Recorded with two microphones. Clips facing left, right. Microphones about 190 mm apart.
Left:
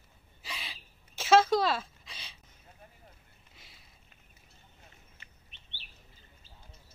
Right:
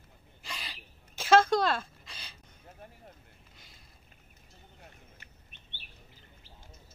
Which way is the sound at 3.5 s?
Centre (ahead or behind).